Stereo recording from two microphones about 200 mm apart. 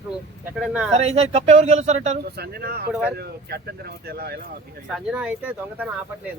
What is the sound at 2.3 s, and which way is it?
Speech, 50° right (ahead or behind).